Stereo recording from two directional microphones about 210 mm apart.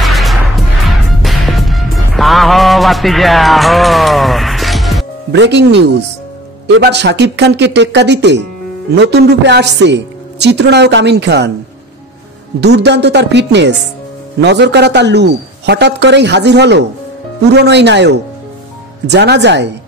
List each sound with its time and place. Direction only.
0.0 s music: centre (ahead or behind)
5.3 s a woman's voice: 55° right (ahead or behind)
12.5 s a woman's voice: 55° right (ahead or behind)